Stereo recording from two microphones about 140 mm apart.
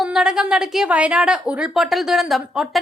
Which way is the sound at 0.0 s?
5° right (ahead or behind).